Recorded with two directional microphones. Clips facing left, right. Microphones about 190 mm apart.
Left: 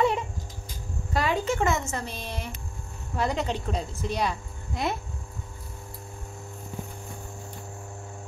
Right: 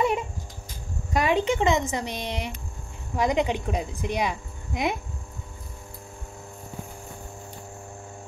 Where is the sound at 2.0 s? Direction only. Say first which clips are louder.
Right 5 dB; 85° right.